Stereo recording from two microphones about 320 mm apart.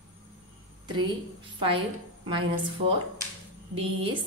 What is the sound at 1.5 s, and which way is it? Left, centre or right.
A woman's voice, centre.